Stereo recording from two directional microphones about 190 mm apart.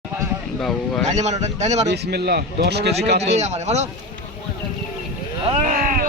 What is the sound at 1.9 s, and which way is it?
A man's voice, 60° right (ahead or behind).